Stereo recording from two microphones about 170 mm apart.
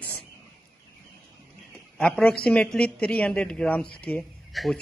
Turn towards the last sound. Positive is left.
turn(degrees=0)  # may be behind; listen again after turning